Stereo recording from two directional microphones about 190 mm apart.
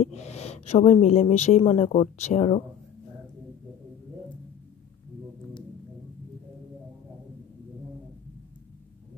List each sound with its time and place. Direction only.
0.0 s a woman's voice: 35° left (ahead or behind)